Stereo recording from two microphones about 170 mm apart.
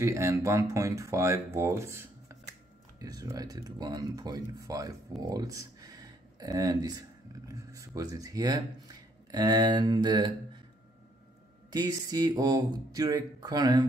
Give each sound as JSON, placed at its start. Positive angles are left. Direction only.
{"t": 0.0, "sound": "speech", "side_deg": -15}
{"t": 11.7, "sound": "speech", "side_deg": -20}